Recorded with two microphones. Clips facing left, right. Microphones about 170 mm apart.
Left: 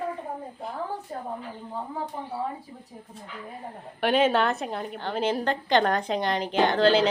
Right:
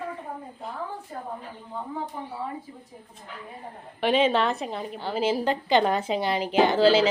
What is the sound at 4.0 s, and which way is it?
A woman's voice, centre (ahead or behind).